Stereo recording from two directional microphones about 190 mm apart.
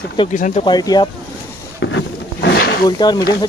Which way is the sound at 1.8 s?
75° left (ahead or behind).